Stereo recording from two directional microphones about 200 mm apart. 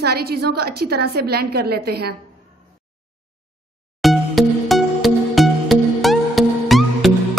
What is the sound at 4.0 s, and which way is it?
Music, centre (ahead or behind).